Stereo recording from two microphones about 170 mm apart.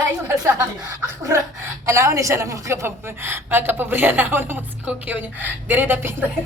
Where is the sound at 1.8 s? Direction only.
15° right (ahead or behind).